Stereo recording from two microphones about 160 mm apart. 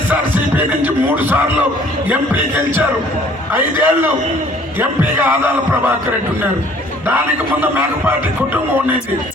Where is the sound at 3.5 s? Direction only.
10° right (ahead or behind).